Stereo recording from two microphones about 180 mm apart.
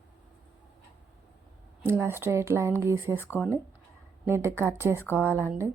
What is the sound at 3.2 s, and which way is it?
Speech, 15° left (ahead or behind).